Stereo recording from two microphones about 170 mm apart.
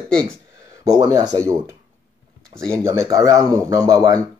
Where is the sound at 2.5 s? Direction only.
5° left (ahead or behind).